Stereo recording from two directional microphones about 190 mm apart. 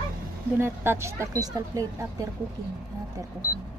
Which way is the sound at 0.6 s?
15° right (ahead or behind).